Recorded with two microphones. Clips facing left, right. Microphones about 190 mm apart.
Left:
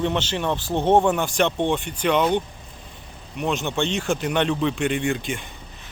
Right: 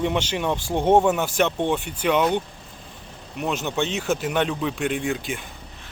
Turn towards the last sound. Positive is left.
turn(degrees=0)  # may be behind; listen again after turning